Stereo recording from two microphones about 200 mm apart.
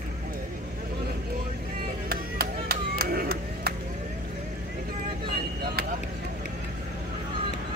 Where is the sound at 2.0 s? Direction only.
50° right (ahead or behind).